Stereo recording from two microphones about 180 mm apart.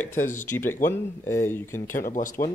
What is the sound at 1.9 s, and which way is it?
Speech, 50° left (ahead or behind).